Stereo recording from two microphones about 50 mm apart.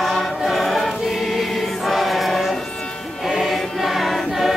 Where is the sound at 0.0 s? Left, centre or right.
Centre.